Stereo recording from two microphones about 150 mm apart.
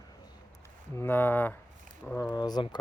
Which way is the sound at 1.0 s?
15° left (ahead or behind).